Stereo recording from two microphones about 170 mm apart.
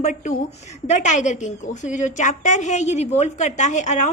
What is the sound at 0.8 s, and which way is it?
A woman's voice, 45° left (ahead or behind).